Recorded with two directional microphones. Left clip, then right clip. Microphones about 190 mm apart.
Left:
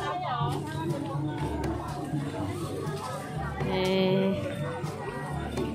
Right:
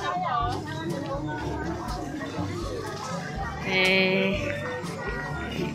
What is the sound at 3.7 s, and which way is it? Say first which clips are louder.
Music: right 5 dB; 15° left (ahead or behind).